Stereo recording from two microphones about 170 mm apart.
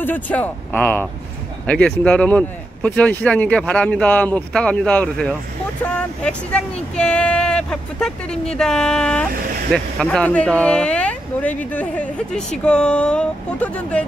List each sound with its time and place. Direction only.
0.0 s speech: 10° left (ahead or behind)